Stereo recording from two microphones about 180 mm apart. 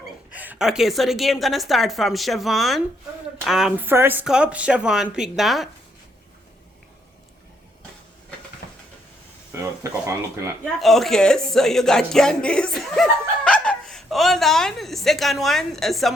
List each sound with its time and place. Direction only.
0.3 s speech: 5° right (ahead or behind)
8.6 s hiss: 60° left (ahead or behind)
9.5 s speech: 15° right (ahead or behind)
10.8 s speech: centre (ahead or behind)